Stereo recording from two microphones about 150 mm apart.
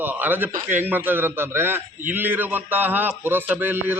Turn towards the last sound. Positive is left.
turn(degrees=-15)  # may be behind; listen again after turning